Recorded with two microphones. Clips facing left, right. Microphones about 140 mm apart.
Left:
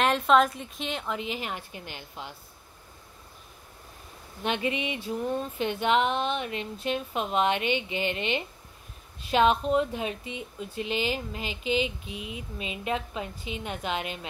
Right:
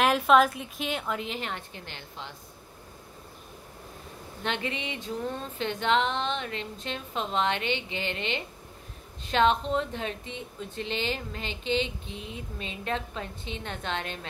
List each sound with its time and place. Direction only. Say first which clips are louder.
0.0 s a woman's voice: right 1 dB; 5° right (ahead or behind); by 2.3 s 15° left (ahead or behind)
4.4 s speech: left 4 dB; 15° left (ahead or behind)